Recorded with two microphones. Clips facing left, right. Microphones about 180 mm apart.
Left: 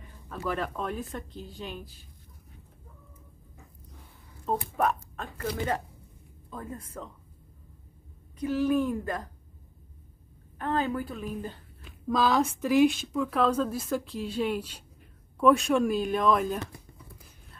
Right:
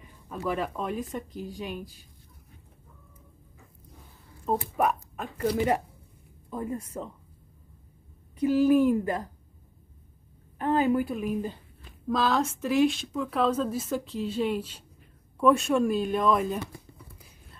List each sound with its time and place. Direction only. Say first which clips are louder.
0.3 s speech: right 2 dB; 10° right (ahead or behind)
4.5 s speech: right 2 dB; 10° right (ahead or behind)
6.5 s speech: right 6 dB; 20° right (ahead or behind)
8.4 s speech: right 5 dB; 15° right (ahead or behind)
10.6 s a woman's voice: right 5 dB; 15° right (ahead or behind)